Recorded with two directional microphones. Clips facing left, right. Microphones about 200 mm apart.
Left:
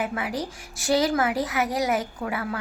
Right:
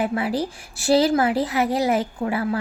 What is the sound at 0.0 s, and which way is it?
A woman's voice, 30° right (ahead or behind).